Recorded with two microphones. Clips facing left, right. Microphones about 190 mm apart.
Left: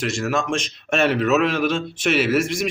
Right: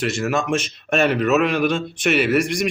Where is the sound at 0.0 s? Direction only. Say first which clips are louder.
Right 1 dB; centre (ahead or behind).